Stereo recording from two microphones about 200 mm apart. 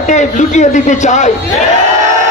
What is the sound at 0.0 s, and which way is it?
A man's voice, 35° left (ahead or behind).